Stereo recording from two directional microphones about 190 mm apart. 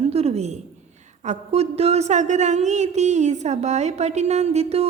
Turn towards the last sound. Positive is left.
turn(degrees=-35)  # may be behind; listen again after turning